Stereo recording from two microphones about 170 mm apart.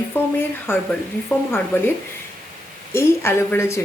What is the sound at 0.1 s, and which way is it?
Speech, 15° left (ahead or behind).